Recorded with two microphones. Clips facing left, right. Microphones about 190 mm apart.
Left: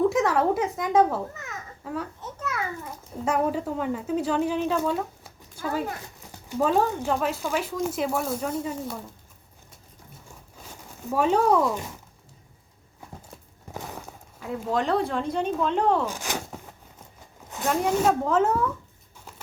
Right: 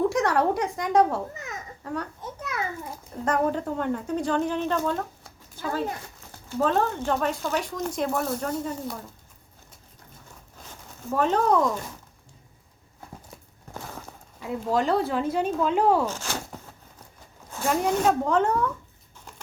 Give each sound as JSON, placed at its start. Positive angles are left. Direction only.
{"t": 0.0, "sound": "a woman's voice", "side_deg": 0}
{"t": 1.4, "sound": "babbling", "side_deg": -15}
{"t": 1.8, "sound": "a child's voice", "side_deg": 0}
{"t": 2.2, "sound": "a sound", "side_deg": -15}
{"t": 3.1, "sound": "a woman's voice", "side_deg": 5}
{"t": 6.5, "sound": "a woman's voice", "side_deg": 10}
{"t": 11.1, "sound": "speech", "side_deg": 10}
{"t": 14.3, "sound": "a woman's voice", "side_deg": 0}
{"t": 16.0, "sound": "speech", "side_deg": 15}
{"t": 17.6, "sound": "a woman's voice", "side_deg": 0}